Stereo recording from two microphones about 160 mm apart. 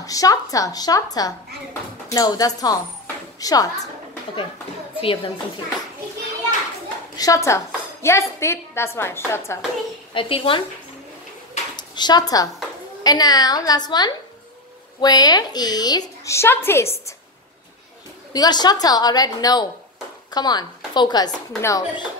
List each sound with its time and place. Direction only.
0.0 s speech: 20° left (ahead or behind)
5.0 s speech: 35° left (ahead or behind)
7.2 s a woman's voice: 20° left (ahead or behind)
10.1 s speech: 35° left (ahead or behind)
11.7 s speech: 25° left (ahead or behind)
18.3 s speech: 25° left (ahead or behind)